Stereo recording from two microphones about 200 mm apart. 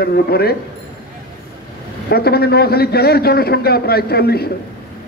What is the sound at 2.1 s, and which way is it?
A man's voice, 50° left (ahead or behind).